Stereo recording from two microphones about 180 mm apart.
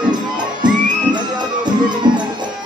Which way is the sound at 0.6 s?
25° right (ahead or behind).